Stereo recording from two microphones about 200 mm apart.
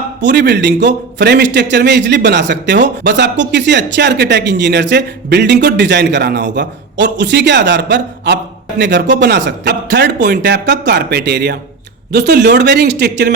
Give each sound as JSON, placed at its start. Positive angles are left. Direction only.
{"t": 0.2, "sound": "a man's voice", "side_deg": -60}